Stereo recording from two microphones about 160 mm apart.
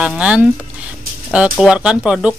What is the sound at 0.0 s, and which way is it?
Speech, 5° right (ahead or behind).